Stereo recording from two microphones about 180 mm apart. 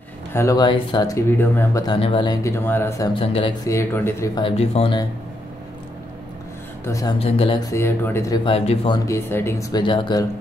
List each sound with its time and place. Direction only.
0.3 s speech: 15° left (ahead or behind)
2.0 s speech: 30° left (ahead or behind)
2.4 s speech: 15° left (ahead or behind)
3.2 s speech: 30° left (ahead or behind)
3.6 s speech: 15° left (ahead or behind)
4.4 s speech: 30° left (ahead or behind)
6.8 s speech: 20° left (ahead or behind)
7.2 s speech: 35° left (ahead or behind)
7.7 s speech: 15° left (ahead or behind)
8.5 s speech: 30° left (ahead or behind)